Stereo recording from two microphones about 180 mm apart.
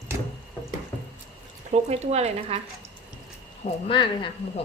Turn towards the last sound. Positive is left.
turn(degrees=25)  # may be behind; listen again after turning